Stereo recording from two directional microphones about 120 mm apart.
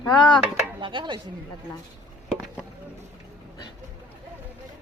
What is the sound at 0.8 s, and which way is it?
Speech, 40° right (ahead or behind).